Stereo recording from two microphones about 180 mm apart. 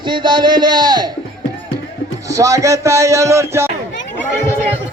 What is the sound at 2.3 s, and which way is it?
Speech, 15° right (ahead or behind).